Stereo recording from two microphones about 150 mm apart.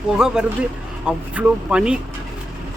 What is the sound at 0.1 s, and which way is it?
Speech, 5° right (ahead or behind).